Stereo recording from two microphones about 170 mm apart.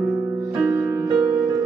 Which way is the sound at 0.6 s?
20° right (ahead or behind).